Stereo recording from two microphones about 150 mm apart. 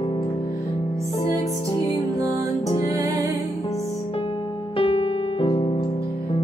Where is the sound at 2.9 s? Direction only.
20° right (ahead or behind).